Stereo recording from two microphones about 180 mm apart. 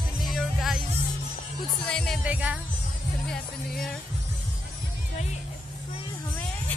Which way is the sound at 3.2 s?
5° left (ahead or behind).